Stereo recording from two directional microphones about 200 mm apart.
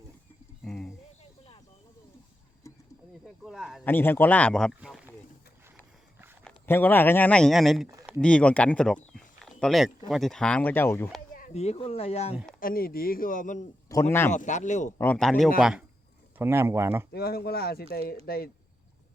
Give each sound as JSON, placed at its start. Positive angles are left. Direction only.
{"t": 0.6, "sound": "a sound", "side_deg": 5}
{"t": 2.6, "sound": "a sound", "side_deg": 15}
{"t": 3.2, "sound": "a sound", "side_deg": 0}
{"t": 3.8, "sound": "speech", "side_deg": 10}
{"t": 6.4, "sound": "speech", "side_deg": 10}
{"t": 9.1, "sound": "a sound", "side_deg": 0}
{"t": 10.1, "sound": "speech", "side_deg": 0}
{"t": 11.3, "sound": "speech", "side_deg": 35}
{"t": 12.5, "sound": "speech", "side_deg": 45}
{"t": 14.1, "sound": "speech", "side_deg": 10}
{"t": 14.3, "sound": "speech", "side_deg": 40}
{"t": 14.9, "sound": "speech", "side_deg": 10}
{"t": 16.4, "sound": "speech", "side_deg": -10}
{"t": 17.1, "sound": "speech", "side_deg": 50}